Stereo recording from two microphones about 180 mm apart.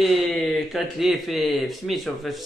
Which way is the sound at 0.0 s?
Centre (ahead or behind).